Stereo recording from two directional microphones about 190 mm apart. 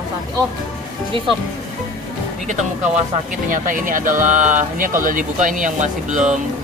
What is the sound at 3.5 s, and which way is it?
Speech, 45° right (ahead or behind).